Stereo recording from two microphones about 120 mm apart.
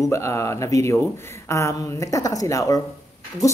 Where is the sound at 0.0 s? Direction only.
25° left (ahead or behind).